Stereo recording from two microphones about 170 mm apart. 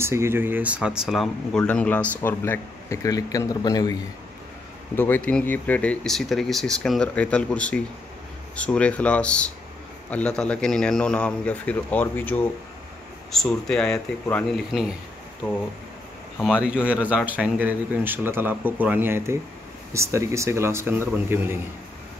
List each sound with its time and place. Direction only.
0.0 s speech: 15° right (ahead or behind); by 3.9 s 20° left (ahead or behind)
4.9 s speech: 10° left (ahead or behind)
13.9 s speech: 15° left (ahead or behind)
14.7 s speech: centre (ahead or behind)
16.3 s speech: 5° right (ahead or behind)